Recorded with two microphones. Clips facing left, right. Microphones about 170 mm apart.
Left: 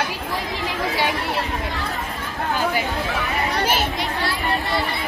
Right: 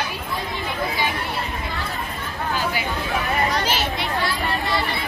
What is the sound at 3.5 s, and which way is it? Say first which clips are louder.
Children playing: left 2 dB; 55° left (ahead or behind).